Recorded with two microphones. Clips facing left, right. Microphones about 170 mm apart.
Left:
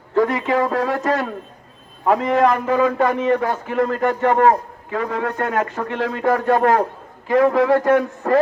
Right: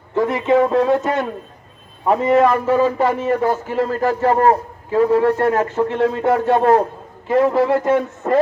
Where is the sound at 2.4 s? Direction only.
25° right (ahead or behind).